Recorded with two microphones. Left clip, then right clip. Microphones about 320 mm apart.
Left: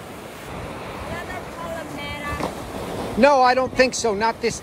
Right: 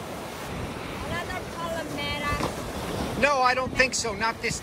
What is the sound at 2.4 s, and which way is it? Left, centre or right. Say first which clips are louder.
Vehicle: left 2 dB; left.